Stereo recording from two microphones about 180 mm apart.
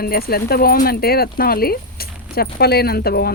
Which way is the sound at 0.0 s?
55° left (ahead or behind).